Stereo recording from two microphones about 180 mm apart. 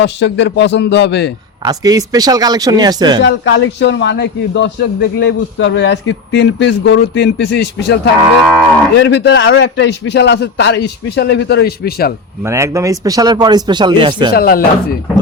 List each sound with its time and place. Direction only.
0.0 s a man's voice: 80° left
1.6 s speech: 20° right (ahead or behind)
3.2 s a man's voice: 85° left; by 12.1 s 60° left (ahead or behind)
12.4 s speech: 15° right (ahead or behind)
14.3 s speech: 55° left (ahead or behind)